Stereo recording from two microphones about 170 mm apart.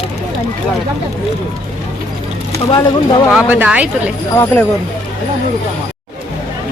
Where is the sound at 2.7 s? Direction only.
25° left (ahead or behind).